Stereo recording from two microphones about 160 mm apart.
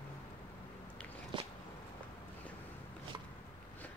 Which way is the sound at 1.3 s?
30° right (ahead or behind).